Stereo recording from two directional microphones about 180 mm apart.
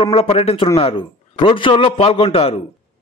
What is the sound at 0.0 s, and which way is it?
A man's voice, 35° left (ahead or behind).